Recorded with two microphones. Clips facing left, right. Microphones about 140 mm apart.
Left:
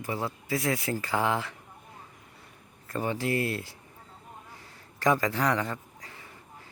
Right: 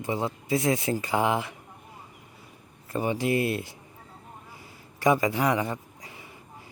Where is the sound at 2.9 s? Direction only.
15° right (ahead or behind).